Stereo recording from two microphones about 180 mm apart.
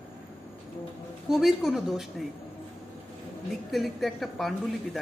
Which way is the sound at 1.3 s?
Centre (ahead or behind).